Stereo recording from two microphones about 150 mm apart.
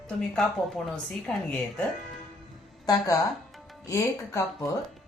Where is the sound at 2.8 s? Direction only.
25° left (ahead or behind).